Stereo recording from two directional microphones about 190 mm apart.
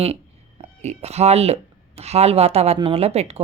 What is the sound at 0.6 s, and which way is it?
Speech, 35° right (ahead or behind).